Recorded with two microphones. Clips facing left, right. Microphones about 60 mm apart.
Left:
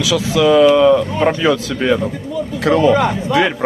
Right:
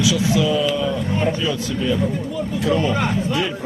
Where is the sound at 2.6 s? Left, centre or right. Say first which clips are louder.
Left 8 dB; left.